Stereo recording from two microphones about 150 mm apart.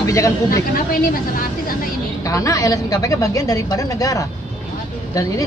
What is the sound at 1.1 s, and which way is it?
Speech, 75° left (ahead or behind).